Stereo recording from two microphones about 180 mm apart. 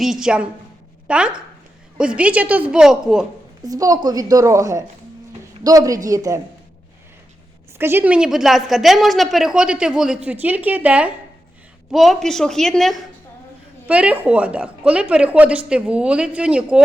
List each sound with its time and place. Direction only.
0.0 s a woman's voice: centre (ahead or behind)
3.6 s a woman's voice: 20° right (ahead or behind)
7.8 s a woman's voice: 10° right (ahead or behind)